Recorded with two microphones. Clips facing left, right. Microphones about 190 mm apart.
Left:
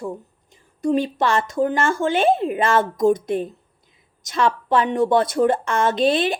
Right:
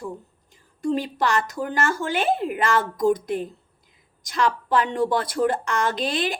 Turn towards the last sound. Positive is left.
turn(degrees=25)  # may be behind; listen again after turning